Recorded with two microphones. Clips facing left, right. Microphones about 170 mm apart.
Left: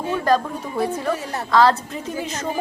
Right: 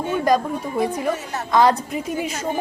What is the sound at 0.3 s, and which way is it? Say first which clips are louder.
Speech: even; 15° right (ahead or behind).